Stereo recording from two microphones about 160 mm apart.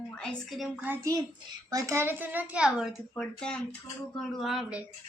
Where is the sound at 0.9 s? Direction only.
20° right (ahead or behind); by 2.9 s 5° right (ahead or behind).